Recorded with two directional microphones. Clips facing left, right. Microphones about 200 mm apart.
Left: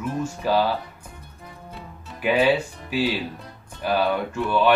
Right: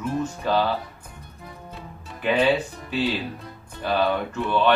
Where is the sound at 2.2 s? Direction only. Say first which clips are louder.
Left 1 dB; 15° left (ahead or behind).